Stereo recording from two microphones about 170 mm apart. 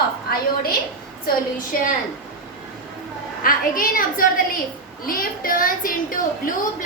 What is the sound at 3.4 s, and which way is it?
A woman's voice, 55° left (ahead or behind).